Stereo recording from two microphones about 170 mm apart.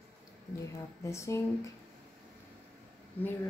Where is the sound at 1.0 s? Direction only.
15° left (ahead or behind).